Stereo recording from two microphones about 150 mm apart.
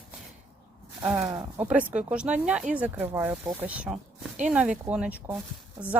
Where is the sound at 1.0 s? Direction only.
10° right (ahead or behind).